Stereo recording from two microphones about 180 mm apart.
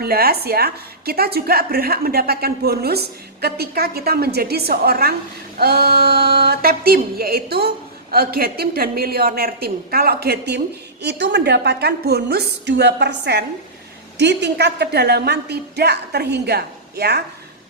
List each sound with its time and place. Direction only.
0.0 s a woman's voice: 60° right (ahead or behind)